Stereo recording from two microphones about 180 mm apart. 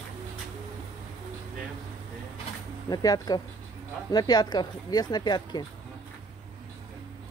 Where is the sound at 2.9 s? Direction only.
20° left (ahead or behind).